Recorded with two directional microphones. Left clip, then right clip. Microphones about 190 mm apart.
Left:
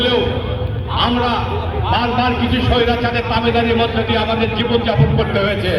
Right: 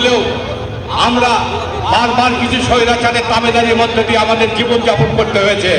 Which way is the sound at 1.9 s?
25° right (ahead or behind).